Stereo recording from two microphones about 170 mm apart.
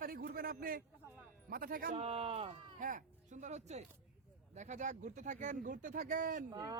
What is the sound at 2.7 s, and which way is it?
A man's voice, 50° right (ahead or behind).